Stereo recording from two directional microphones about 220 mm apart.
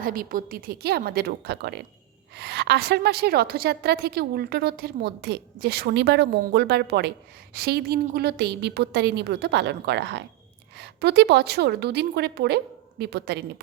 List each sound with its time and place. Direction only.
0.0 s a woman's voice: 40° right (ahead or behind)